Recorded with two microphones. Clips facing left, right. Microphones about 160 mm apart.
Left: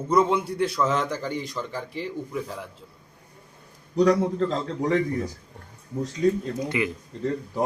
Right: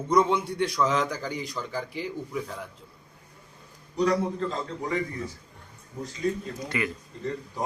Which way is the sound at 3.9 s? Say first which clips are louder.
Left 5 dB; 90° left.